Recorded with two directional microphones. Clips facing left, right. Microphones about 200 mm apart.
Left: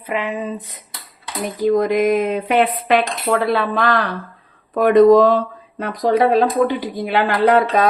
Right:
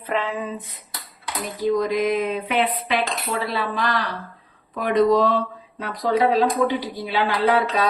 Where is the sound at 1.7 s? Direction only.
55° left (ahead or behind).